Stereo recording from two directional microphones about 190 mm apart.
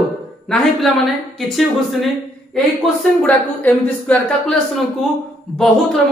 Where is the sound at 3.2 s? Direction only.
5° left (ahead or behind).